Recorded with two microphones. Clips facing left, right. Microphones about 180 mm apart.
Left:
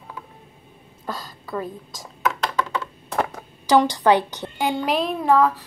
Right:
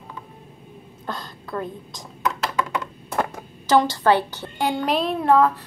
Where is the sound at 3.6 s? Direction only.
15° left (ahead or behind).